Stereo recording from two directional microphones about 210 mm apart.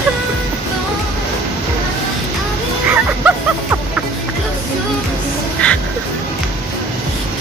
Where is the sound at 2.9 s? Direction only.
5° right (ahead or behind).